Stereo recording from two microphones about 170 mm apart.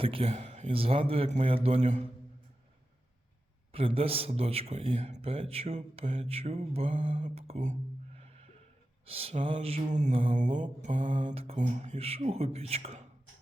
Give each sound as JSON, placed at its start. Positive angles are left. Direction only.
{"t": 0.0, "sound": "a man's voice", "side_deg": -35}
{"t": 3.7, "sound": "a man's voice", "side_deg": -35}